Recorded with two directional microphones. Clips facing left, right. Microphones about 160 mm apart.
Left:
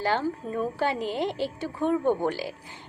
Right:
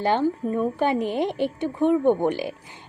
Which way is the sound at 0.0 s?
20° right (ahead or behind).